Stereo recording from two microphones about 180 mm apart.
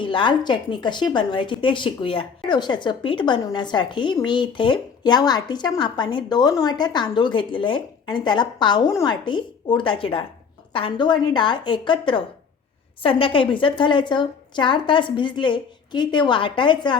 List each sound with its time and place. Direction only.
0.0 s a woman's voice: 25° left (ahead or behind)